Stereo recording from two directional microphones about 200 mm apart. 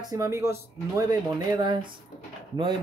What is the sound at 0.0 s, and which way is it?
Speech, 20° right (ahead or behind).